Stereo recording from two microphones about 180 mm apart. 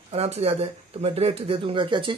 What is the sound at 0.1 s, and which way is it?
Speech, 35° right (ahead or behind).